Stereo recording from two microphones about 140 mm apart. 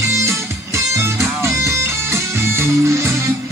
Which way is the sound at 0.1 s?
20° right (ahead or behind).